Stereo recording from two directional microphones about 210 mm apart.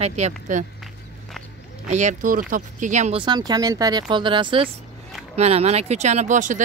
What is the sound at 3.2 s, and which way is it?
Speech, 20° right (ahead or behind).